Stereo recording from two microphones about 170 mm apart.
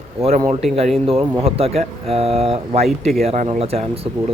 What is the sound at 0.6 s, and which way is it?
Speech, centre (ahead or behind).